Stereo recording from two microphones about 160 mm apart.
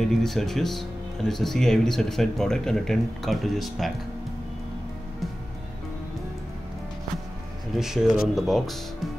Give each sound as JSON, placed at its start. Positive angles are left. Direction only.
{"t": 0.0, "sound": "speech", "side_deg": 0}
{"t": 7.7, "sound": "speech", "side_deg": 0}